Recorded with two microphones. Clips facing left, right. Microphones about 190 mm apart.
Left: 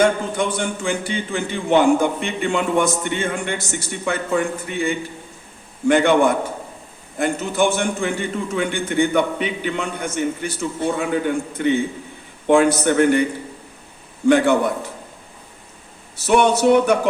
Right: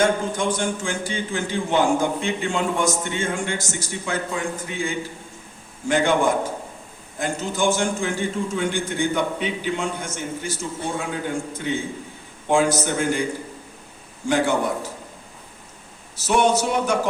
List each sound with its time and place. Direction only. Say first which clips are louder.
0.0 s a man's voice: left 3 dB; 60° left (ahead or behind)
14.3 s a man's voice: left 6 dB; 60° left (ahead or behind)
16.1 s a man's voice: left 3 dB; 60° left (ahead or behind)